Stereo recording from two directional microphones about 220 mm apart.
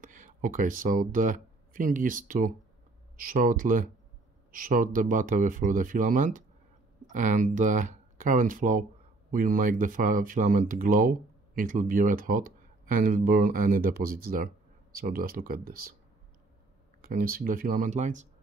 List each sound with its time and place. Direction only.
0.0 s speech: 35° right (ahead or behind)
17.0 s speech: 40° right (ahead or behind)